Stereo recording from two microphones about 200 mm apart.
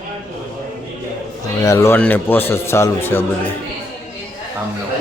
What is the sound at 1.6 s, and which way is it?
A man's voice, 15° left (ahead or behind).